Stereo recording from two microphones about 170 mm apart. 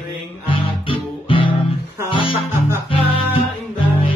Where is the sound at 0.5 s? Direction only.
30° left (ahead or behind).